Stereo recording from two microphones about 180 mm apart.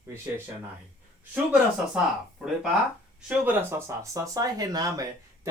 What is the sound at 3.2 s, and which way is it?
Speech, 10° right (ahead or behind).